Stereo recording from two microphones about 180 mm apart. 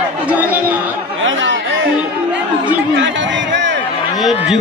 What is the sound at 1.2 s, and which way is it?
Chatter, 90° right.